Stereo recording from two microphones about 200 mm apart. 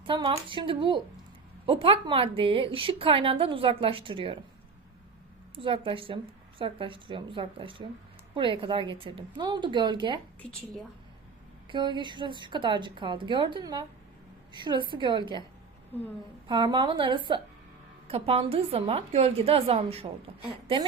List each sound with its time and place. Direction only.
0.0 s a woman's voice: 25° right (ahead or behind)
5.5 s a woman's voice: 25° right (ahead or behind)
10.4 s speech: 30° left (ahead or behind)
11.7 s a woman's voice: 25° right (ahead or behind)
16.5 s a woman's voice: 20° right (ahead or behind)